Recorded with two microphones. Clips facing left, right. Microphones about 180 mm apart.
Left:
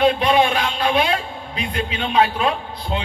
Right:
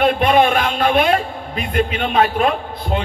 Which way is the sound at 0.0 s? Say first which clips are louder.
Right 2 dB; 55° right (ahead or behind).